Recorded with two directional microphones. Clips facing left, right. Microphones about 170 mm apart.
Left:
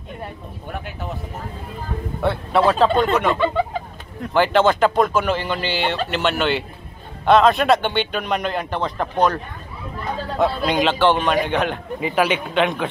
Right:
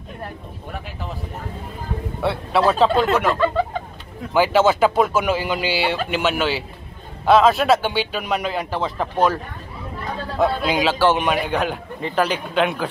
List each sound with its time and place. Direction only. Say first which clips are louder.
0.2 s a man's voice: right 2 dB; centre (ahead or behind)
2.2 s a man's voice: left 1 dB; centre (ahead or behind)